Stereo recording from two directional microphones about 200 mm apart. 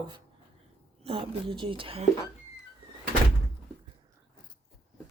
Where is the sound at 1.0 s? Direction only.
30° right (ahead or behind).